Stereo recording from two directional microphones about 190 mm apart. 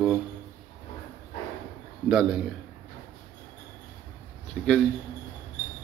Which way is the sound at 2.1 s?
5° right (ahead or behind).